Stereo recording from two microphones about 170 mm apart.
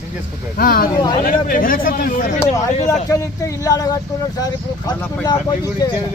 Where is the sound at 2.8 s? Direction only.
20° left (ahead or behind).